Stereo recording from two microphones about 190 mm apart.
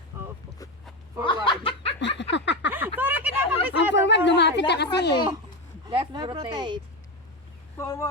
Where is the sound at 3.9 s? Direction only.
65° left (ahead or behind).